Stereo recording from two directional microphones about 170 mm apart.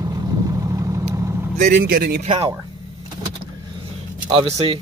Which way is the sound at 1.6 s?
55° right (ahead or behind).